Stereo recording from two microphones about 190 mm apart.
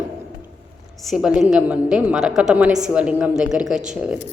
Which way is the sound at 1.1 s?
5° right (ahead or behind).